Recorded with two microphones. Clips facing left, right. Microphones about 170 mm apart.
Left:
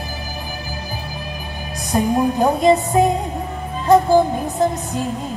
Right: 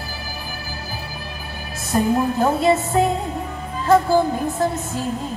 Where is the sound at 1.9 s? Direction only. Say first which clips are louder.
Left 1 dB; 15° left (ahead or behind).